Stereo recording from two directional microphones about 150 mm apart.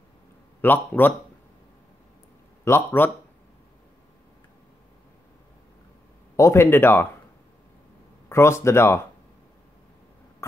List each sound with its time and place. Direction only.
0.6 s speech: 10° left (ahead or behind)
2.6 s speech: 15° left (ahead or behind)
6.3 s speech: 20° left (ahead or behind)
8.3 s speech: 15° left (ahead or behind)